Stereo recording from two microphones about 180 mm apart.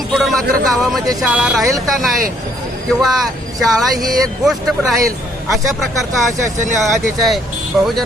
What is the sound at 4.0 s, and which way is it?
Speech, 20° right (ahead or behind).